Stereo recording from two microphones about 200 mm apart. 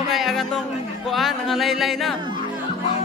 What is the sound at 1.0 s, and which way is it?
Speech, centre (ahead or behind).